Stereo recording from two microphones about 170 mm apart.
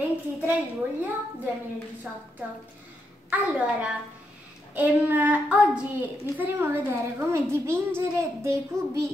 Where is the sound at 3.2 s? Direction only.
10° right (ahead or behind).